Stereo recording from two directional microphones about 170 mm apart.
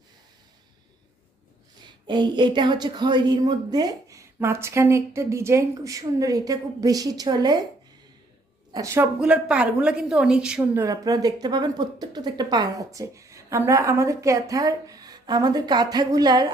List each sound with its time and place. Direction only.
1.8 s a woman's voice: 25° right (ahead or behind)
8.7 s a woman's voice: 15° right (ahead or behind)
9.2 s a woman's voice: 5° right (ahead or behind); by 16.5 s 25° right (ahead or behind)